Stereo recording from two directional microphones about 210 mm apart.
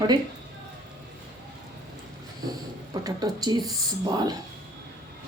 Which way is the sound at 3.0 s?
20° right (ahead or behind).